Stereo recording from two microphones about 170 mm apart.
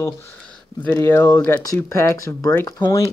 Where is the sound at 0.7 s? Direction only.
10° left (ahead or behind).